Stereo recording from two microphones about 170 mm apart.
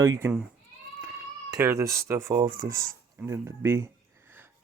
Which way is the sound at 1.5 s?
15° right (ahead or behind).